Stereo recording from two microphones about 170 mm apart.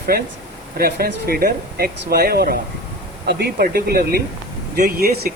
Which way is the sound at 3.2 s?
75° right (ahead or behind).